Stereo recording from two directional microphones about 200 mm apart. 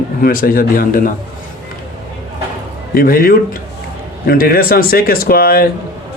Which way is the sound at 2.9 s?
45° left (ahead or behind).